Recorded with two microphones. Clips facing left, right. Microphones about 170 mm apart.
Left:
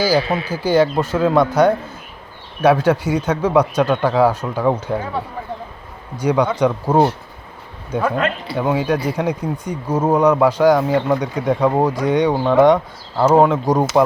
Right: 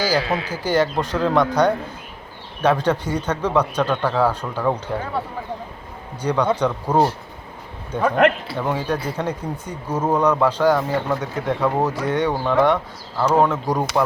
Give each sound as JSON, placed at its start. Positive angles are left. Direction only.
{"t": 0.0, "sound": "speech", "side_deg": 10}
{"t": 6.1, "sound": "speech", "side_deg": 10}